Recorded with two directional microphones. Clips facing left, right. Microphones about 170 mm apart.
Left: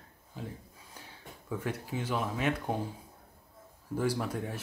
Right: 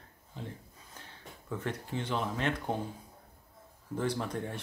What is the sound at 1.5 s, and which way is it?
Speech, 10° left (ahead or behind).